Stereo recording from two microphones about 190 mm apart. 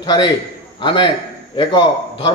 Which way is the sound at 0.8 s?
25° left (ahead or behind).